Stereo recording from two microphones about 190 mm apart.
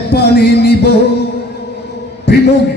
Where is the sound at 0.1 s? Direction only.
60° left (ahead or behind).